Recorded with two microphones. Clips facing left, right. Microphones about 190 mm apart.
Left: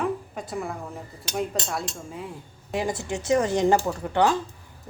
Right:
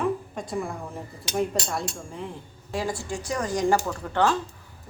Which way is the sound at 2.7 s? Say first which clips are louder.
Left 2 dB; 20° left (ahead or behind).